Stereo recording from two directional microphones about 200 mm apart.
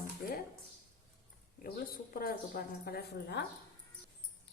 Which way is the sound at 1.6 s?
45° left (ahead or behind).